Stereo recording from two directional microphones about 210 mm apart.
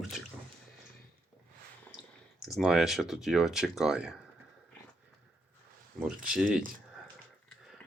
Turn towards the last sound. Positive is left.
turn(degrees=0)  # may be behind; listen again after turning